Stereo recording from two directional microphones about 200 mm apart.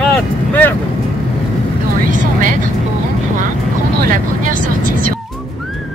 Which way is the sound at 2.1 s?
40° right (ahead or behind).